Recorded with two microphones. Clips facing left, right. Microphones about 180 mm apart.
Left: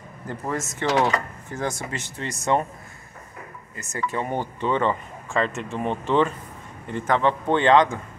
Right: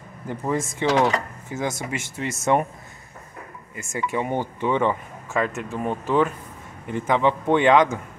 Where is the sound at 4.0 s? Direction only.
15° right (ahead or behind).